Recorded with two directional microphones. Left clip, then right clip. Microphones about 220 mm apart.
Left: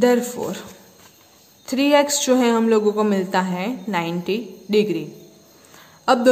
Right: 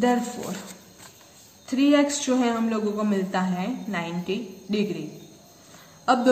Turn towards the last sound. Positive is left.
turn(degrees=50)  # may be behind; listen again after turning